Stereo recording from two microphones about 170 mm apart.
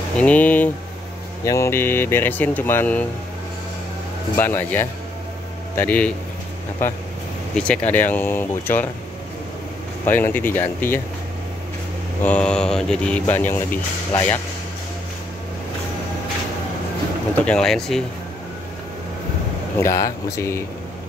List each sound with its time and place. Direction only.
0.2 s speech: 10° left (ahead or behind)
4.4 s speech: 10° left (ahead or behind)
10.0 s speech: 10° left (ahead or behind)
12.2 s speech: 10° left (ahead or behind)
17.5 s speech: 5° left (ahead or behind)
19.8 s speech: 20° left (ahead or behind)